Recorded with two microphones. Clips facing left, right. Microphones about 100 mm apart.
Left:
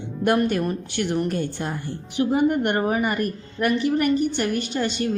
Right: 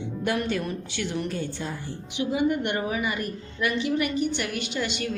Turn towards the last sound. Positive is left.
turn(degrees=40)  # may be behind; listen again after turning